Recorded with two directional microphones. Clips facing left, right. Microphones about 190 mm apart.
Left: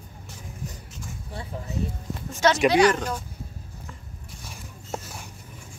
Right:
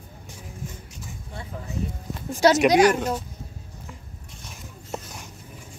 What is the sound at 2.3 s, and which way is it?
Speech, 35° right (ahead or behind).